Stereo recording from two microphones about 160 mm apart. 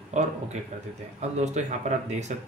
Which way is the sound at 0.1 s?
45° right (ahead or behind).